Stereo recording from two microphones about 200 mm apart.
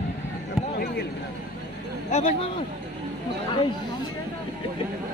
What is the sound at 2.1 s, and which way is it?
Speech, 30° left (ahead or behind).